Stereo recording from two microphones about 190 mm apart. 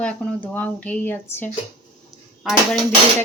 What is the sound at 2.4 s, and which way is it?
Speech, centre (ahead or behind).